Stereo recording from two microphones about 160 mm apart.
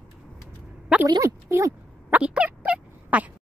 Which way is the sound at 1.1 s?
20° right (ahead or behind).